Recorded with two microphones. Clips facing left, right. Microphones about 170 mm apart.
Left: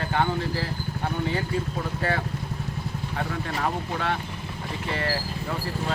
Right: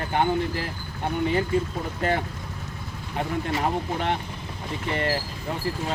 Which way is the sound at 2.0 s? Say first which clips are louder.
Right 4 dB; 20° right (ahead or behind).